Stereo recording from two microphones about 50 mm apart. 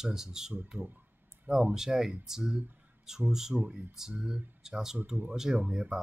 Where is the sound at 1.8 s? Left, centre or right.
Centre.